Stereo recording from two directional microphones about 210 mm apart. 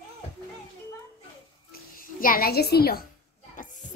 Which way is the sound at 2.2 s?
45° left (ahead or behind).